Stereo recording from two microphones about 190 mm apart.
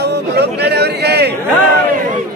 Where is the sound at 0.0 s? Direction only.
60° right (ahead or behind).